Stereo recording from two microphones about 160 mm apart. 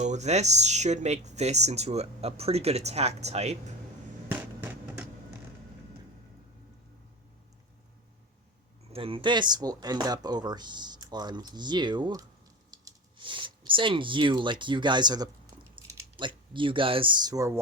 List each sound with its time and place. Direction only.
0.0 s speech: 45° right (ahead or behind)
4.3 s a sound: 10° right (ahead or behind)
8.9 s speech: 35° right (ahead or behind); by 17.6 s 20° right (ahead or behind)